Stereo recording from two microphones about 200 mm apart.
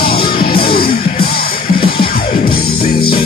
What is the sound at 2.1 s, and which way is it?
Music, 50° left (ahead or behind).